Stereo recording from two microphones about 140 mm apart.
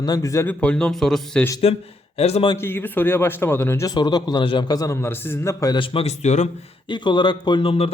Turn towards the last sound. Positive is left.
turn(degrees=40)  # may be behind; listen again after turning